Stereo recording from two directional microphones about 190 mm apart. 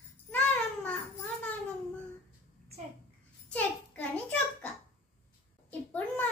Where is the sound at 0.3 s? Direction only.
10° left (ahead or behind).